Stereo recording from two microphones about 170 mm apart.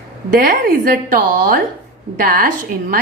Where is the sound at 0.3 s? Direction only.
55° right (ahead or behind).